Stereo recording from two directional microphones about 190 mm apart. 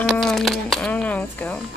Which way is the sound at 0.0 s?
Centre (ahead or behind).